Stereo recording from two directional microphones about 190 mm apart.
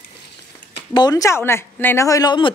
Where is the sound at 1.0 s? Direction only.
20° left (ahead or behind).